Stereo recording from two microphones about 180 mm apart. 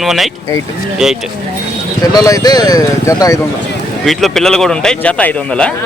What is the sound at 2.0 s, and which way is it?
Speech, 20° left (ahead or behind).